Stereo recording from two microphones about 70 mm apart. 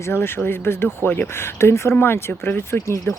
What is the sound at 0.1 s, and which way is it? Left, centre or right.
Speech, left.